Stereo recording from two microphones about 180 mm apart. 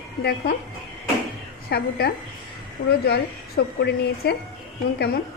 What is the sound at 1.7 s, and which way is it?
A woman's voice, 60° left (ahead or behind).